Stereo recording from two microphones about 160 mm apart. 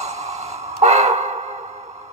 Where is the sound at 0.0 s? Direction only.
40° right (ahead or behind).